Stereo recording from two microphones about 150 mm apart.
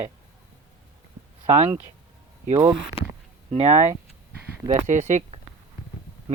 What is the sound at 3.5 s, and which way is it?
Speech, 40° right (ahead or behind).